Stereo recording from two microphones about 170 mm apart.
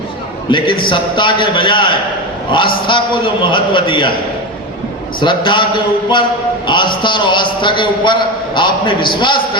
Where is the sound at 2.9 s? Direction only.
30° left (ahead or behind).